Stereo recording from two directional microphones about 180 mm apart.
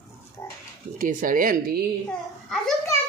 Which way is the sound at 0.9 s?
50° right (ahead or behind).